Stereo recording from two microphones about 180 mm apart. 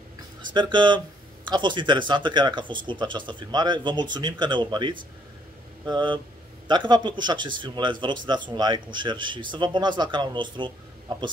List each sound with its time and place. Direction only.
0.5 s speech: 25° right (ahead or behind)